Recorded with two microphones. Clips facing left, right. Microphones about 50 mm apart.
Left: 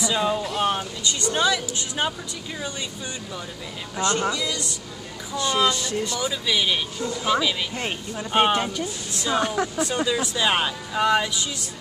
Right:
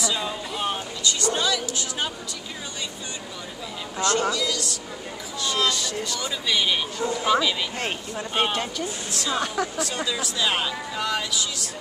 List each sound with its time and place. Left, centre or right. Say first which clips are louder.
0.0 s speech: left 5 dB; centre
0.6 s vehicle: left 2 dB; centre
1.0 s a woman's voice: left 2 dB; left
4.0 s speech: even; centre
5.7 s speech: left 2 dB; left
6.1 s speech: even; centre
7.0 s speech: right 2 dB; right
7.2 s speech: even; centre
8.3 s speech: left 5 dB; centre